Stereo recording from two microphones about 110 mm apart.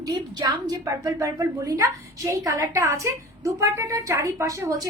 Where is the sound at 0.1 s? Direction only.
40° right (ahead or behind).